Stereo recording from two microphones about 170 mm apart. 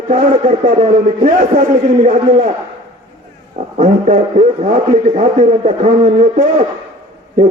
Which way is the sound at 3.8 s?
45° right (ahead or behind).